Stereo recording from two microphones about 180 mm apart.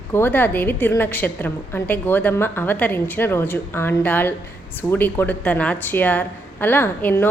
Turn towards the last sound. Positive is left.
turn(degrees=10)  # may be behind; listen again after turning